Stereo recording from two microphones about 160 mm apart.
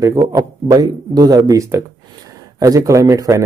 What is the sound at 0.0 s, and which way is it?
Speech, 20° right (ahead or behind).